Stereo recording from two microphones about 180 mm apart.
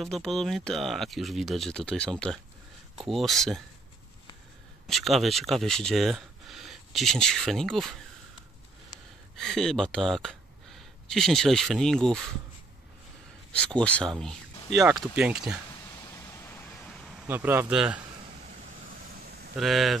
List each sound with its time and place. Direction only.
0.0 s speech: centre (ahead or behind)
4.8 s speech: centre (ahead or behind)
9.4 s speech: centre (ahead or behind)
13.5 s speech: 5° left (ahead or behind)
15.0 s speech: 5° right (ahead or behind)
15.7 s vehicle: 20° left (ahead or behind)
17.3 s speech: 10° right (ahead or behind)
19.5 s speech: centre (ahead or behind)